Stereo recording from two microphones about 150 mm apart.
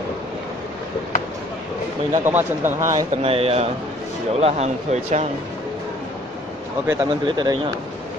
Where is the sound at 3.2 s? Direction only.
40° right (ahead or behind).